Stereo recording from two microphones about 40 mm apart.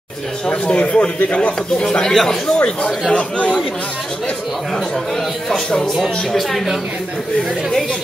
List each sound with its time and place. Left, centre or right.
0.5 s speech: left
2.0 s speech: centre
6.3 s a woman's voice: centre